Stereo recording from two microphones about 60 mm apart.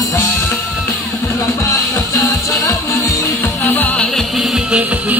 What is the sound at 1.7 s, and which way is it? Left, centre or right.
Music, left.